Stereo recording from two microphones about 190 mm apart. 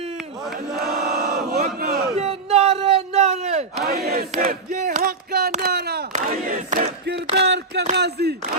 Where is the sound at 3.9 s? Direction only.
55° right (ahead or behind).